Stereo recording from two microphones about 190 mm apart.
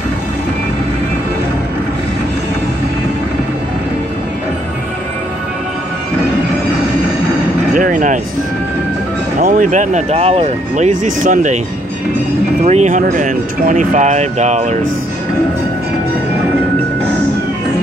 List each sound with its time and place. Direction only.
7.7 s a sound: 40° right (ahead or behind)
9.4 s speech: 40° right (ahead or behind)
12.6 s speech: 35° right (ahead or behind)